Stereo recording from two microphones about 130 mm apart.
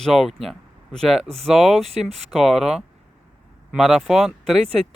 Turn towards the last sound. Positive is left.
turn(degrees=0)  # may be behind; listen again after turning